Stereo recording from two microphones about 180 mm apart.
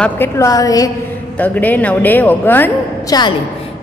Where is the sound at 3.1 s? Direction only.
20° left (ahead or behind).